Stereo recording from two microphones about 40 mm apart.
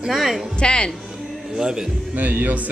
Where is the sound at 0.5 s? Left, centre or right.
Left.